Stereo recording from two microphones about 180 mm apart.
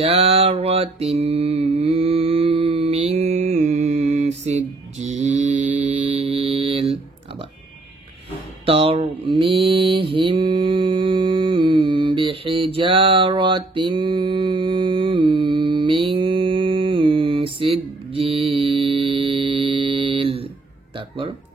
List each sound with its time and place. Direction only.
0.0 s mantra: 35° right (ahead or behind)
8.6 s mantra: 30° right (ahead or behind)